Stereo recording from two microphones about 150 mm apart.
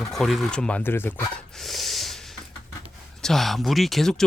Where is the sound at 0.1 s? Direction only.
Centre (ahead or behind).